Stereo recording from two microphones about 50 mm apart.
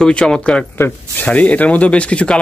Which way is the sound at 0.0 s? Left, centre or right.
Centre.